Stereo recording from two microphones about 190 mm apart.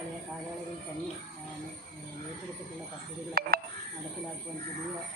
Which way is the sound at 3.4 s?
50° right (ahead or behind).